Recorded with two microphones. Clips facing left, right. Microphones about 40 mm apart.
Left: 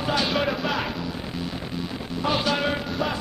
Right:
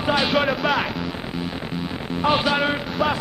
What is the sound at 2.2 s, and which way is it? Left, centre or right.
Music, right.